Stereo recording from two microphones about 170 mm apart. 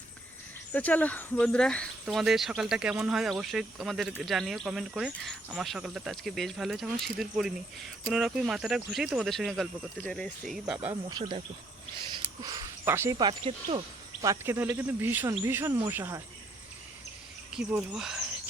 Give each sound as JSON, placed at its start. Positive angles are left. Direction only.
{"t": 0.7, "sound": "speech", "side_deg": 10}
{"t": 11.1, "sound": "speech", "side_deg": -30}
{"t": 14.2, "sound": "speech", "side_deg": -15}
{"t": 17.6, "sound": "speech", "side_deg": -5}